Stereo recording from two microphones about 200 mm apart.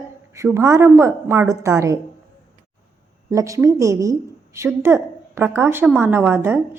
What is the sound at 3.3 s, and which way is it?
A woman's voice, 15° right (ahead or behind).